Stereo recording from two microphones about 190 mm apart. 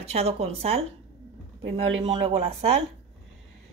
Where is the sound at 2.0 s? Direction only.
30° right (ahead or behind).